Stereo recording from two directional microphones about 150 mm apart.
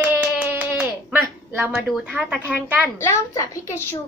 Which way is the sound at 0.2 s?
10° right (ahead or behind).